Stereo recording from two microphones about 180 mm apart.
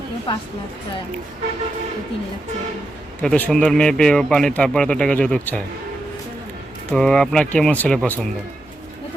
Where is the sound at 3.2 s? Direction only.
5° left (ahead or behind).